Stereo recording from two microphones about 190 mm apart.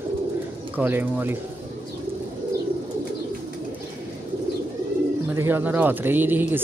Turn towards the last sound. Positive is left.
turn(degrees=-10)  # may be behind; listen again after turning